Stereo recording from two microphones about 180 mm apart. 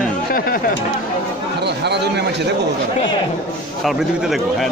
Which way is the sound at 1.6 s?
70° right (ahead or behind).